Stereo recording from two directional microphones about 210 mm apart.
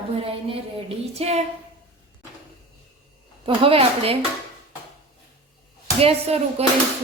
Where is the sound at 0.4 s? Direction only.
30° right (ahead or behind).